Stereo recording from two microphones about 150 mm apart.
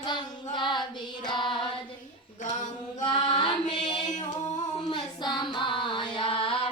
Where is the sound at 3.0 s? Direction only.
30° left (ahead or behind).